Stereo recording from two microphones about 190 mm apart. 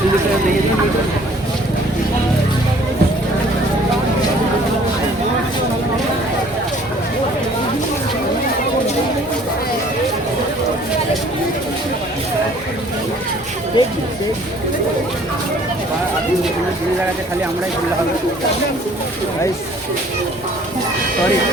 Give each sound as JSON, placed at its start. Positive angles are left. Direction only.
{"t": 13.7, "sound": "speech", "side_deg": 25}